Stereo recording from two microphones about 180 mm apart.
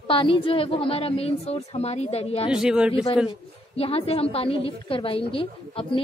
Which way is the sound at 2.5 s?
5° right (ahead or behind).